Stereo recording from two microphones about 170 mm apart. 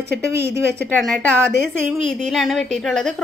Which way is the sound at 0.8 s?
5° left (ahead or behind).